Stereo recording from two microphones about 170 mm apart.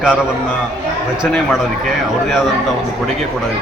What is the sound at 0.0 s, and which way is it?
Speech, 5° right (ahead or behind).